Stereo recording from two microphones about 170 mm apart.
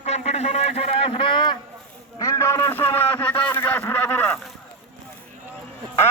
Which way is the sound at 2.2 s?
15° left (ahead or behind).